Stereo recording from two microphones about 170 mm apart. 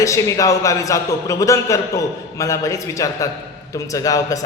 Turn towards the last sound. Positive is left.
turn(degrees=20)  # may be behind; listen again after turning